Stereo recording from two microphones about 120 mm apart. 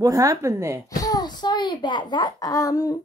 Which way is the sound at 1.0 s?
35° left (ahead or behind).